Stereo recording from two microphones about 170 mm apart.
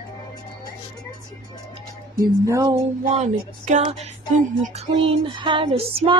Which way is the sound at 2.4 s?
20° right (ahead or behind).